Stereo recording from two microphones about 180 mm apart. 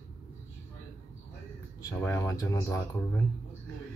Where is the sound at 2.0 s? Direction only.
10° left (ahead or behind).